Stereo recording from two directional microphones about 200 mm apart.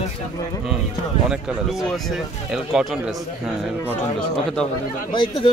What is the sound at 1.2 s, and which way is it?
Speech, centre (ahead or behind).